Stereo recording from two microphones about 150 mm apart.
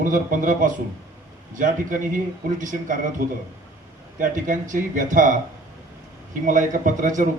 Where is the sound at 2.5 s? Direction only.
60° right (ahead or behind).